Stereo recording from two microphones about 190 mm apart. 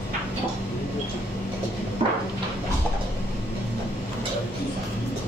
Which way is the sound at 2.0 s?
30° right (ahead or behind).